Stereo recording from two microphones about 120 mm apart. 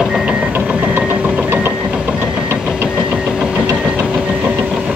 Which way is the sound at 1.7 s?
5° right (ahead or behind).